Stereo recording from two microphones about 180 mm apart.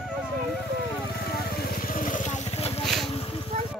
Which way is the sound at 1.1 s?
60° left (ahead or behind).